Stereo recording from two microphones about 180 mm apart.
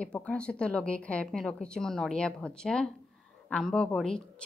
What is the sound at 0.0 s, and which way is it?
Speech, 5° left (ahead or behind).